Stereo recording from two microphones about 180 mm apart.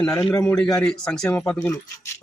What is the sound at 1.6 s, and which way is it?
Speech, 20° left (ahead or behind).